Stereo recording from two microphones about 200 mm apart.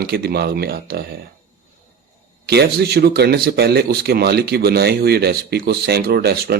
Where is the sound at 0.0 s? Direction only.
55° right (ahead or behind).